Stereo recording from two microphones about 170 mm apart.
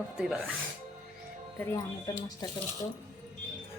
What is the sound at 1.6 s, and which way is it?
Speech, 20° left (ahead or behind).